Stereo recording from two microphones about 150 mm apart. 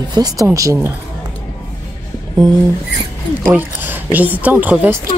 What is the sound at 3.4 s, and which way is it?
A woman's voice, 10° right (ahead or behind).